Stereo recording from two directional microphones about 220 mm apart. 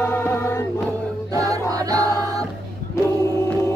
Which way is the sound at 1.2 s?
15° right (ahead or behind).